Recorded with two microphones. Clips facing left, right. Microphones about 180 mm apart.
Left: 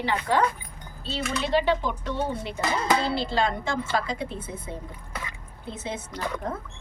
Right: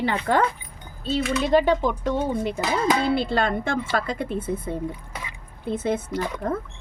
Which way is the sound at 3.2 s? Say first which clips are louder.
Right 3 dB; 55° right (ahead or behind).